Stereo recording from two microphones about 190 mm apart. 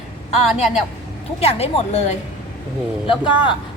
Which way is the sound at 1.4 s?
30° left (ahead or behind).